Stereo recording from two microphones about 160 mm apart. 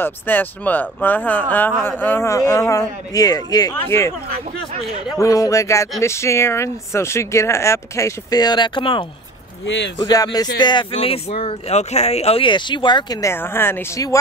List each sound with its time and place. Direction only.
0.0 s speech: 10° left (ahead or behind)
5.1 s speech: 20° left (ahead or behind)
10.0 s speech: 25° left (ahead or behind)